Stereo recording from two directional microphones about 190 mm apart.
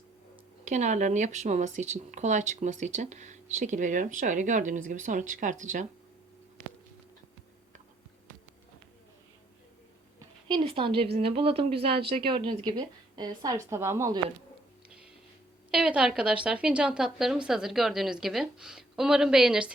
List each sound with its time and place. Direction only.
0.6 s speech: 40° right (ahead or behind)
10.2 s a sound: 25° right (ahead or behind)
11.2 s speech: 30° right (ahead or behind)
14.8 s music: 5° right (ahead or behind)
15.7 s a woman's voice: 5° right (ahead or behind)